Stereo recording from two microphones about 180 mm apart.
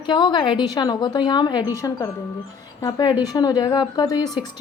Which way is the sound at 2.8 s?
20° left (ahead or behind).